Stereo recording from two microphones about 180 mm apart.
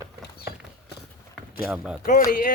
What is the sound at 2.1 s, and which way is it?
Speech, 50° left (ahead or behind).